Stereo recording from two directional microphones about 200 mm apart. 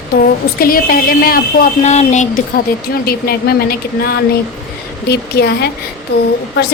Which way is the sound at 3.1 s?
50° left (ahead or behind).